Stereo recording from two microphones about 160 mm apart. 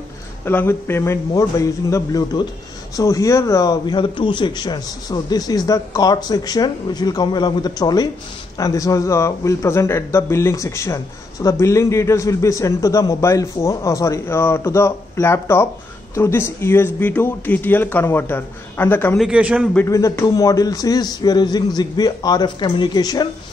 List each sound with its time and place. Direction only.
0.5 s a man's voice: 15° left (ahead or behind)
19.1 s a man's voice: 5° right (ahead or behind)
19.7 s a man's voice: 15° left (ahead or behind)